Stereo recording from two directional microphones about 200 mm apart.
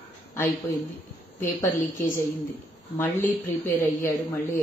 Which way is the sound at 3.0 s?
10° left (ahead or behind).